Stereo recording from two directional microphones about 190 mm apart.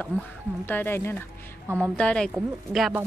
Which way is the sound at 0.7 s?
10° left (ahead or behind).